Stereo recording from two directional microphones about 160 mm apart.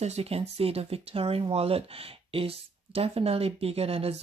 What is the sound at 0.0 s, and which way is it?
Speech, 40° right (ahead or behind).